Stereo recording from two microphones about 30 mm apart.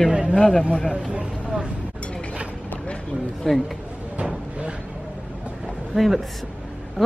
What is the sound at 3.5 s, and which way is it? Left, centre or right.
Speech, centre.